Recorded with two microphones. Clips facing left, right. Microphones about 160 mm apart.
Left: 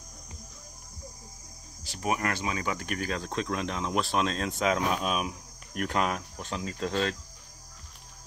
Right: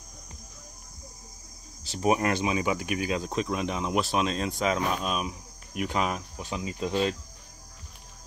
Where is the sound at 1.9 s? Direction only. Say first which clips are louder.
Right 5 dB; 25° right (ahead or behind).